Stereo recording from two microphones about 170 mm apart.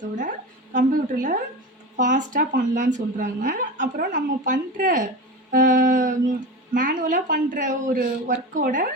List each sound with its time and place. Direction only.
0.2 s a woman's voice: 50° right (ahead or behind)